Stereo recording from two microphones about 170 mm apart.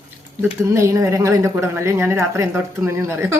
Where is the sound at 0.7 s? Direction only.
15° right (ahead or behind).